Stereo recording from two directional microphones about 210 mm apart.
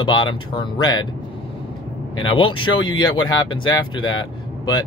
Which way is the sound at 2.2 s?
25° left (ahead or behind).